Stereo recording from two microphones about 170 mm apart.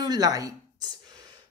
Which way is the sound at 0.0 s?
25° right (ahead or behind).